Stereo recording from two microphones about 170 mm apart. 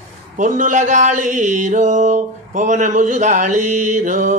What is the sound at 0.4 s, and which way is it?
Speech, 50° right (ahead or behind).